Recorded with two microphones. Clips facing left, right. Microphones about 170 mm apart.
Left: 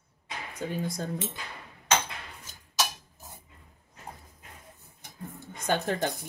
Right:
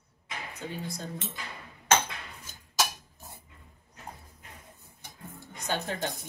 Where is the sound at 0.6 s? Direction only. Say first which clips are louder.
Left 6 dB; 45° left (ahead or behind).